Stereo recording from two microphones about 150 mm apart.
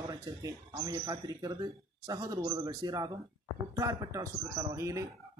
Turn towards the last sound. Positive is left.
turn(degrees=-20)  # may be behind; listen again after turning